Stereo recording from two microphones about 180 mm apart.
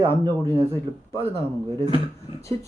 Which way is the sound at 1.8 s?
25° left (ahead or behind).